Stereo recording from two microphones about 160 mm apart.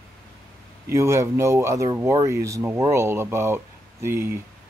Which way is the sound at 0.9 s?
15° right (ahead or behind).